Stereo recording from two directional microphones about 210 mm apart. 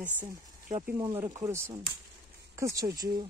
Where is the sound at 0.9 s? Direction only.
20° right (ahead or behind).